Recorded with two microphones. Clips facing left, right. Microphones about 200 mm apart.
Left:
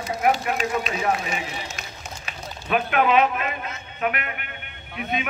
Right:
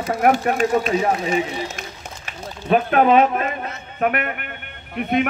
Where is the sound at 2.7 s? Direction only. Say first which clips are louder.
Right 5 dB; 35° right (ahead or behind).